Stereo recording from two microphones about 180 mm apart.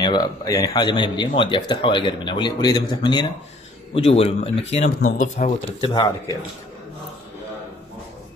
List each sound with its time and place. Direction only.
0.0 s speech: 20° left (ahead or behind)
3.9 s speech: 35° left (ahead or behind)
5.0 s speech: 45° left (ahead or behind)
5.8 s speech: 25° left (ahead or behind)